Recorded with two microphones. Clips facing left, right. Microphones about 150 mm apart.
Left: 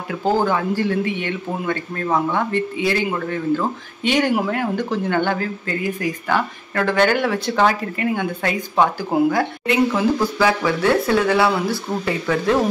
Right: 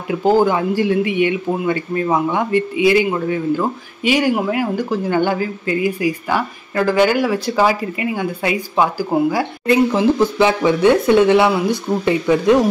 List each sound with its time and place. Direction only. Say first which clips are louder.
0.2 s speech: right 4 dB; 15° right (ahead or behind)
9.7 s speech: right 5 dB; 25° right (ahead or behind)